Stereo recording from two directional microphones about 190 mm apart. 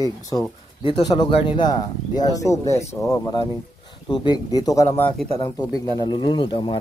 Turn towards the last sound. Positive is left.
turn(degrees=25)  # may be behind; listen again after turning